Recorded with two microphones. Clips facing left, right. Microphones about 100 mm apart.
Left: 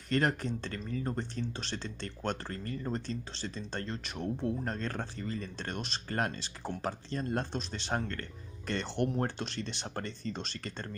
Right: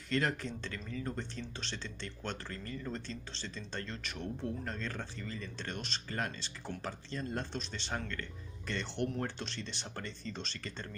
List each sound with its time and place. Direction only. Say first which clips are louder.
0.1 s speech: left 4 dB; 45° left (ahead or behind)